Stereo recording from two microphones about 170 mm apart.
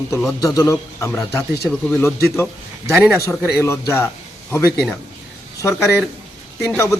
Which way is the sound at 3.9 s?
15° left (ahead or behind).